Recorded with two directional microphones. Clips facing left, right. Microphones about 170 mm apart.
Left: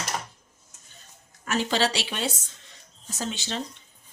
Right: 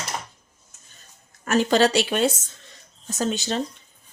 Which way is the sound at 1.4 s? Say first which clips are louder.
Right 7 dB; 45° right (ahead or behind).